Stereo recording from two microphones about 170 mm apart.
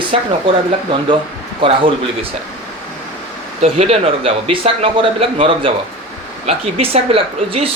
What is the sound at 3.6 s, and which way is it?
Speech, 40° right (ahead or behind).